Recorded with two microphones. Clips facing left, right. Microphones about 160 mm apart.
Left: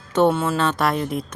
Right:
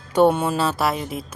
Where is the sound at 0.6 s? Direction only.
5° right (ahead or behind).